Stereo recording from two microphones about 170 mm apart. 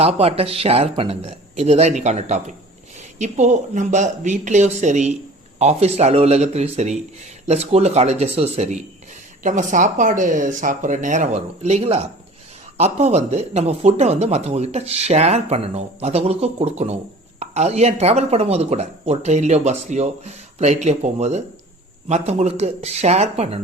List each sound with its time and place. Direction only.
0.0 s speech: 35° right (ahead or behind)